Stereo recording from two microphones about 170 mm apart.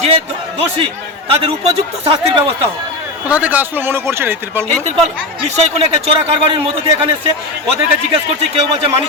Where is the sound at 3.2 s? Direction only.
10° right (ahead or behind).